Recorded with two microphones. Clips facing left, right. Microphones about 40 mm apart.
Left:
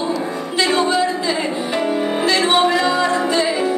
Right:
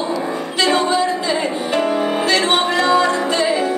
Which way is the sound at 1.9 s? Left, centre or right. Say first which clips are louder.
Right 1 dB; centre.